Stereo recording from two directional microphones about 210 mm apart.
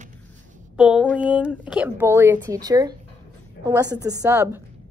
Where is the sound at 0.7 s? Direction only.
5° right (ahead or behind).